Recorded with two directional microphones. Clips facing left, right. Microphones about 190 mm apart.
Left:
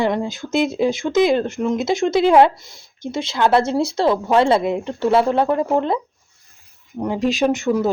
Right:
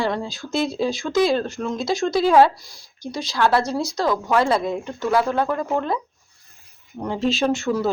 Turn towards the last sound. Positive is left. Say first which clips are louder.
# left 3 dB
turn(degrees=20)  # may be behind; listen again after turning